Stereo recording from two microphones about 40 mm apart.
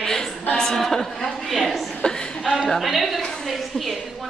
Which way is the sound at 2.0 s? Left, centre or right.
Left.